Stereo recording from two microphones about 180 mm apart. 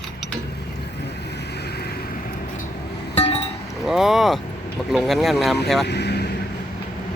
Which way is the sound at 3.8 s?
Centre (ahead or behind).